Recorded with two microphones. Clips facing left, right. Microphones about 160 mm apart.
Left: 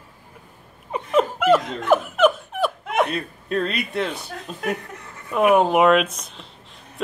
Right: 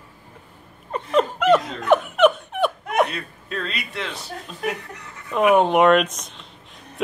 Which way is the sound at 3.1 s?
40° left (ahead or behind).